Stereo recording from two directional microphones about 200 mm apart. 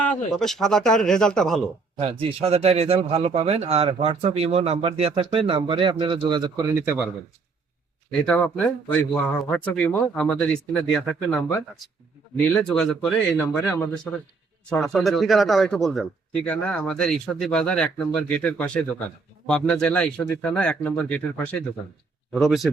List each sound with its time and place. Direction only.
0.3 s a man's voice: centre (ahead or behind)
2.0 s speech: 30° right (ahead or behind); by 7.1 s 10° right (ahead or behind)
8.1 s a man's voice: 5° left (ahead or behind)